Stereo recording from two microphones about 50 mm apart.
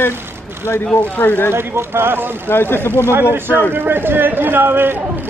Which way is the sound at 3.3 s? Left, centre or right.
Right.